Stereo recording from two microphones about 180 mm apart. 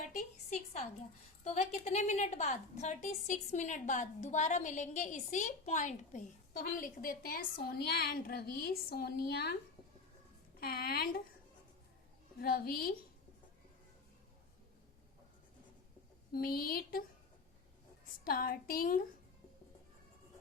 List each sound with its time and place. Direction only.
0.5 s a woman's voice: 45° left (ahead or behind); by 9.6 s 60° left (ahead or behind)
10.6 s a woman's voice: 60° left (ahead or behind)
12.4 s a woman's voice: 55° left (ahead or behind)
16.3 s a woman's voice: 55° left (ahead or behind)
18.3 s a woman's voice: 55° left (ahead or behind)